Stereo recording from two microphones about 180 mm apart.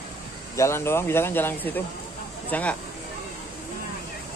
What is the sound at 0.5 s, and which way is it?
Speech, 15° left (ahead or behind).